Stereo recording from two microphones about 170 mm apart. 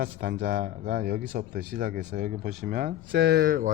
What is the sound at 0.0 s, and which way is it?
Speech, 70° right (ahead or behind).